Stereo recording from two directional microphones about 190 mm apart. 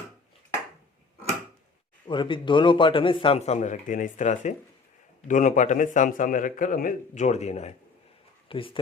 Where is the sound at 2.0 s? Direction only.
25° left (ahead or behind).